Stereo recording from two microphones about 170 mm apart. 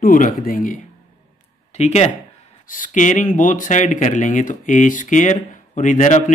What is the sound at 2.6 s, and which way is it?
Speech, 50° left (ahead or behind).